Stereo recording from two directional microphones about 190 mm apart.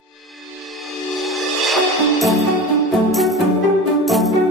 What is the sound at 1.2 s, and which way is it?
Music, centre (ahead or behind).